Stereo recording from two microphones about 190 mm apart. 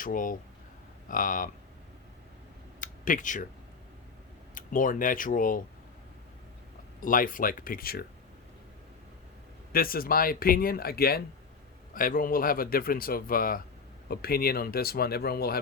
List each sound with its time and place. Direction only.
0.0 s speech: 45° left (ahead or behind)
2.8 s a sound: 45° left (ahead or behind)
4.5 s speech: 45° left (ahead or behind)
7.0 s speech: 45° left (ahead or behind)
9.7 s speech: 50° left (ahead or behind)